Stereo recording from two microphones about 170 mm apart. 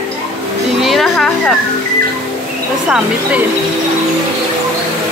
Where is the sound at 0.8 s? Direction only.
Centre (ahead or behind).